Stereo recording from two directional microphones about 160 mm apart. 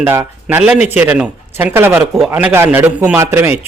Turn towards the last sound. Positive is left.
turn(degrees=-15)  # may be behind; listen again after turning